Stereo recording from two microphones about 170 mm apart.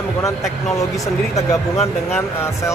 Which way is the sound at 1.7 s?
40° left (ahead or behind).